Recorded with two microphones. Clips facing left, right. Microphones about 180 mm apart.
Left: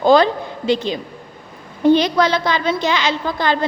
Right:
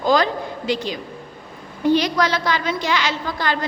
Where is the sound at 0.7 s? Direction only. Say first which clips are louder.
Left 6 dB; 25° left (ahead or behind).